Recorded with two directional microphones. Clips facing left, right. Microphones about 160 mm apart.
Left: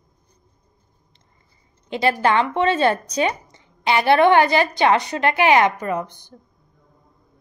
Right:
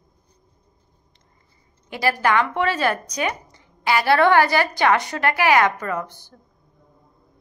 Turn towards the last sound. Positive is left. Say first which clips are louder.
# left 2 dB
turn(degrees=20)  # may be behind; listen again after turning